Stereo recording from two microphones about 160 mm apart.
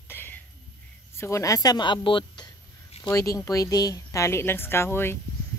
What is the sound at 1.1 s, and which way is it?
A woman's voice, 15° left (ahead or behind).